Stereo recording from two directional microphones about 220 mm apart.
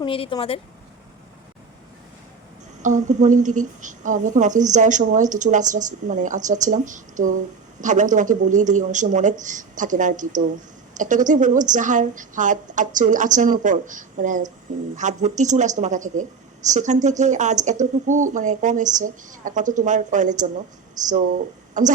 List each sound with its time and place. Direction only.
0.0 s speech: 25° left (ahead or behind)
2.8 s a woman's voice: 35° right (ahead or behind)